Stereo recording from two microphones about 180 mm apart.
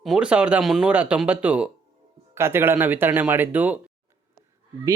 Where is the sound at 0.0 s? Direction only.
5° right (ahead or behind).